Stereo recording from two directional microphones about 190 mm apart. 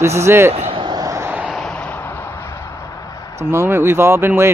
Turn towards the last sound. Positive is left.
turn(degrees=-15)  # may be behind; listen again after turning